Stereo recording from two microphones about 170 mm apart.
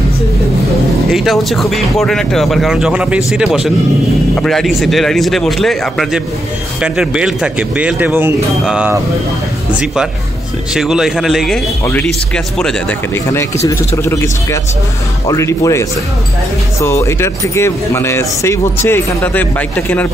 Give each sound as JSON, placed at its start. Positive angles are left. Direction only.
{"t": 1.1, "sound": "speech", "side_deg": 0}
{"t": 10.7, "sound": "speech", "side_deg": -5}
{"t": 13.1, "sound": "speech", "side_deg": 15}